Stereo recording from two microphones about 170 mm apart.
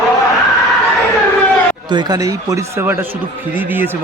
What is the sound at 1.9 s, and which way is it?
A man's voice, 25° right (ahead or behind).